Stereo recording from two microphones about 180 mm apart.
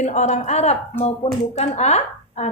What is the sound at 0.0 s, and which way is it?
A woman's voice, 40° left (ahead or behind).